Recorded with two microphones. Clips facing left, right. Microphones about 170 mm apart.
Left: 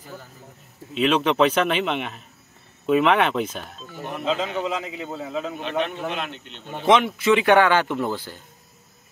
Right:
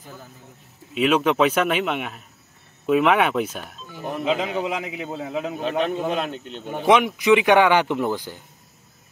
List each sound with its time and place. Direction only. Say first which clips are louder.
0.9 s speech: right 1 dB; 5° right (ahead or behind)
5.6 s speech: right 5 dB; 40° right (ahead or behind)
6.6 s speech: right 1 dB; 10° right (ahead or behind)